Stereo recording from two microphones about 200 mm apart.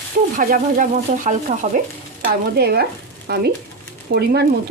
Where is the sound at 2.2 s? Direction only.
55° right (ahead or behind).